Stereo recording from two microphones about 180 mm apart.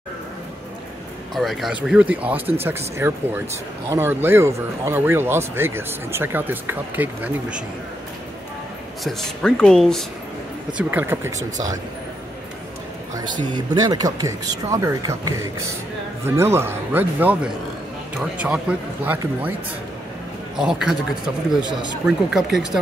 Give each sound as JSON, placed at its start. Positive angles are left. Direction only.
{"t": 1.3, "sound": "speech", "side_deg": 0}
{"t": 9.0, "sound": "speech", "side_deg": 5}
{"t": 13.2, "sound": "speech", "side_deg": -25}
{"t": 20.5, "sound": "speech", "side_deg": -5}
{"t": 22.0, "sound": "speech", "side_deg": -5}